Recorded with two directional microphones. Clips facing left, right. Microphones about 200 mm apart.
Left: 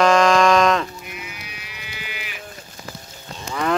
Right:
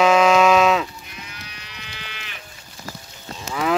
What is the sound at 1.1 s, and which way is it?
Livestock, 10° left (ahead or behind).